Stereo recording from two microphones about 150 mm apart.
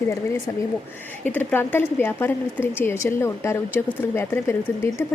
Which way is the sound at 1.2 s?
10° left (ahead or behind).